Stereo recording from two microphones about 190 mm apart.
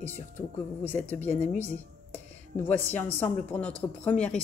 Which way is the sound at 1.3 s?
40° left (ahead or behind).